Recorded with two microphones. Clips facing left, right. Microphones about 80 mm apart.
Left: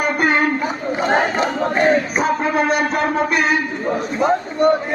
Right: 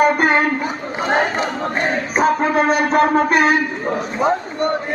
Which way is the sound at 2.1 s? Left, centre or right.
Right.